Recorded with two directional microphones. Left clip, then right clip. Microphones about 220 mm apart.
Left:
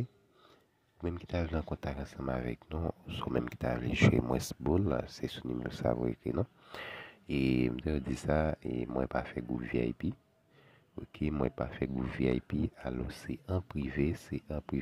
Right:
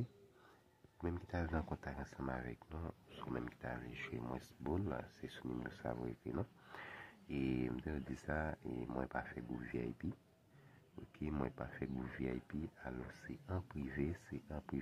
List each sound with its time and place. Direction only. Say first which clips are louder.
1.0 s speech: left 7 dB; 30° left (ahead or behind)